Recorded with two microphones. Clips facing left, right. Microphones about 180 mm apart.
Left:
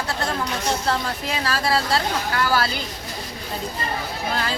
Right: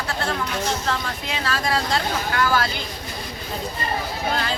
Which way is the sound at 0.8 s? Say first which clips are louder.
Left 2 dB; 35° left (ahead or behind).